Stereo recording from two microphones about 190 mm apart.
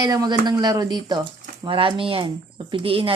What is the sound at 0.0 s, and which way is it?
A woman's voice, 20° right (ahead or behind).